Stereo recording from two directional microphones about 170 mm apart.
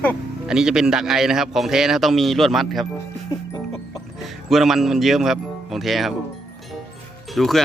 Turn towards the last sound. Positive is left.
turn(degrees=0)  # may be behind; listen again after turning